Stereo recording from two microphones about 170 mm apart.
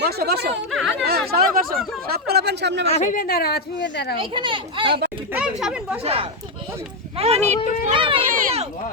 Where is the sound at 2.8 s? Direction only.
40° left (ahead or behind); by 4.2 s 70° left (ahead or behind).